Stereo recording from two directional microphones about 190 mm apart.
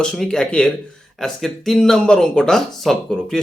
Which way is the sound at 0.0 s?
5° left (ahead or behind).